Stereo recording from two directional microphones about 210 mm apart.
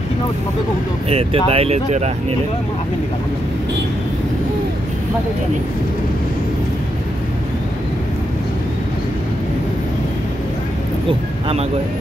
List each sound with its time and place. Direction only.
1.1 s speech: 30° right (ahead or behind)
11.1 s speech: 25° right (ahead or behind)